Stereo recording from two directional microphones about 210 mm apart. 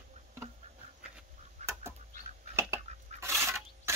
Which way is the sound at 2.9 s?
30° right (ahead or behind).